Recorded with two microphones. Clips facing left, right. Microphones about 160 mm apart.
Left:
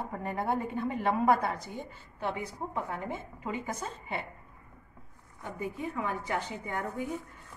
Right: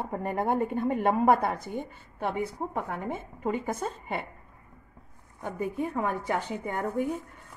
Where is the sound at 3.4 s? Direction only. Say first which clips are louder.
Right 8 dB; 50° right (ahead or behind).